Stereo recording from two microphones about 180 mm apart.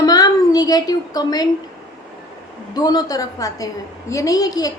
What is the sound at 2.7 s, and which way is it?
A woman's voice, 20° left (ahead or behind).